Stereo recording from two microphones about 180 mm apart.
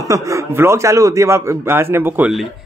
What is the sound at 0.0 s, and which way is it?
A man's voice, 20° right (ahead or behind).